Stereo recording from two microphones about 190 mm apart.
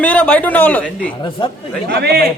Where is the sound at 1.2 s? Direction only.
25° left (ahead or behind).